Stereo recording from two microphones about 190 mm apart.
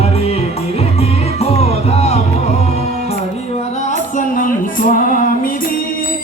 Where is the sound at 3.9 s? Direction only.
45° left (ahead or behind).